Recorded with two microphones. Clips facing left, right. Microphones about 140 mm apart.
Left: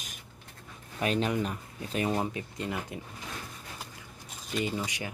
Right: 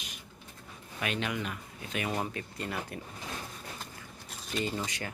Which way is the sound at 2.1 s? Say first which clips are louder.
Left 3 dB; 15° left (ahead or behind).